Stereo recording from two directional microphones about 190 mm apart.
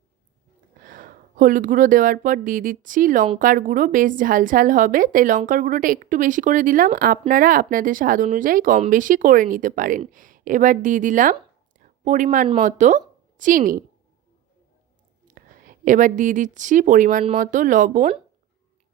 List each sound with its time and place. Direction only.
0.8 s speech: 45° right (ahead or behind)
11.8 s a sound: 40° right (ahead or behind)
12.5 s a woman's voice: 40° right (ahead or behind)
15.4 s speech: 45° right (ahead or behind)